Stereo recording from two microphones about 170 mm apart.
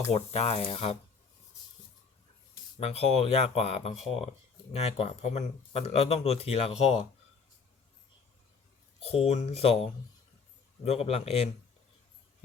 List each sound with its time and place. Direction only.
0.1 s speech: 40° left (ahead or behind)
2.7 s speech: 40° left (ahead or behind)
9.0 s speech: 35° left (ahead or behind)